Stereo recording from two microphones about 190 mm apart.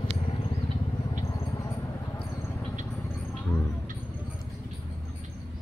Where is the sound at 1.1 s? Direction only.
20° left (ahead or behind).